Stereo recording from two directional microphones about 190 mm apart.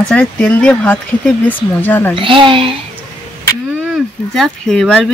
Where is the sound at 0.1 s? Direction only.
5° left (ahead or behind).